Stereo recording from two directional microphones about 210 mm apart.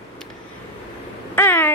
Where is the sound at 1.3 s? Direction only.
10° left (ahead or behind).